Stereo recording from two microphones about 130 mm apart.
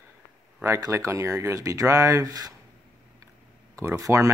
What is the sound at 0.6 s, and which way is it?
Speech, 25° right (ahead or behind).